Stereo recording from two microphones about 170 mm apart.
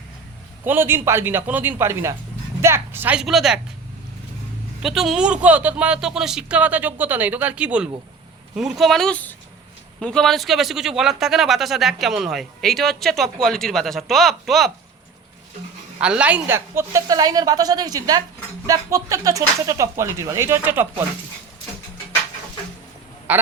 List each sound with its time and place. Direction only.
0.6 s speech: 10° right (ahead or behind)
4.8 s speech: centre (ahead or behind)
16.0 s a woman's voice: 5° right (ahead or behind)
23.3 s speech: 10° right (ahead or behind)